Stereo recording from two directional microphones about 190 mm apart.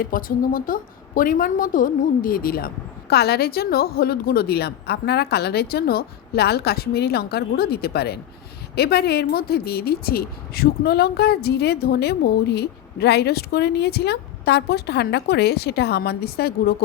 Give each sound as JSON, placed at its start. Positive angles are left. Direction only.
{"t": 0.0, "sound": "a woman's voice", "side_deg": 50}